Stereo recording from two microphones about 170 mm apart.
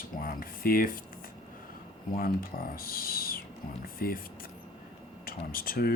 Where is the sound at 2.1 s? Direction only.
60° left (ahead or behind).